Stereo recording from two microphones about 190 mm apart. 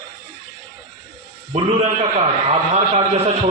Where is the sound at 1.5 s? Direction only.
35° right (ahead or behind).